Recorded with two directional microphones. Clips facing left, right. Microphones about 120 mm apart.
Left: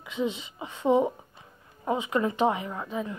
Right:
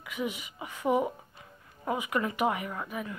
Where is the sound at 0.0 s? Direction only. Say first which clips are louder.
Left 4 dB; 25° left (ahead or behind).